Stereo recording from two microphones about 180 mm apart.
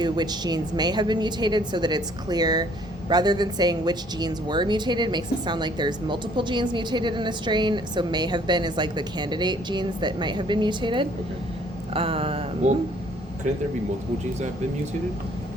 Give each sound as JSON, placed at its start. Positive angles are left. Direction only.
{"t": 0.0, "sound": "speech", "side_deg": -25}